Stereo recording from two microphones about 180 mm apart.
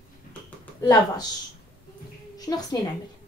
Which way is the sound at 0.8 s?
20° left (ahead or behind).